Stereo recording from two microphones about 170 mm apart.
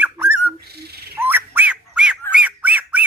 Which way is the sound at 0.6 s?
70° right (ahead or behind).